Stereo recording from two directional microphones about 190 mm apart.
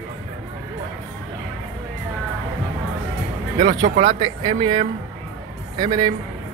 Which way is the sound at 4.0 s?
25° right (ahead or behind).